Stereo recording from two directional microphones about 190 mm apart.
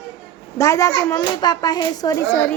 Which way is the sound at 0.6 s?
15° left (ahead or behind).